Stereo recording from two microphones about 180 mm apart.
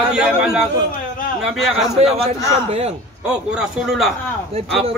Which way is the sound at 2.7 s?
35° right (ahead or behind).